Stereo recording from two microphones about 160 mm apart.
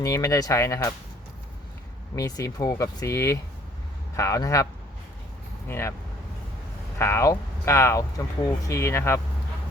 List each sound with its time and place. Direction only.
0.0 s speech: 20° left (ahead or behind)
2.1 s speech: 20° left (ahead or behind)
7.0 s speech: 15° left (ahead or behind)